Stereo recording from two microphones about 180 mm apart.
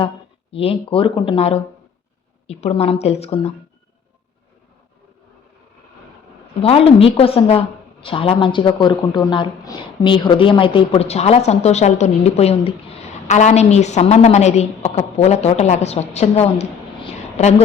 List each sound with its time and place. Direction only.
0.5 s a woman's voice: 30° left (ahead or behind)
6.6 s a woman's voice: 35° left (ahead or behind)